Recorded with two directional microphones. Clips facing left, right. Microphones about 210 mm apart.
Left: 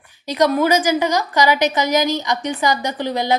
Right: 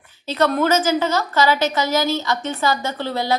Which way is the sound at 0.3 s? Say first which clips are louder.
Left 2 dB; 10° left (ahead or behind).